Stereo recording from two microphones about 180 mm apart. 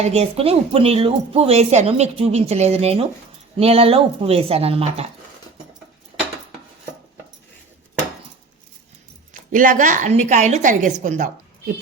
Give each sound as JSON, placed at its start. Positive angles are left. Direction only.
{"t": 0.0, "sound": "speech", "side_deg": -35}
{"t": 9.3, "sound": "a woman's voice", "side_deg": -50}